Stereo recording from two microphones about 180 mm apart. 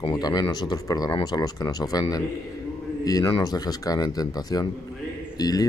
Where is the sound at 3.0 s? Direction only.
25° left (ahead or behind).